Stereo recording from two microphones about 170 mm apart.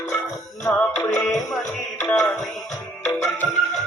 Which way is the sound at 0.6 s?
10° left (ahead or behind).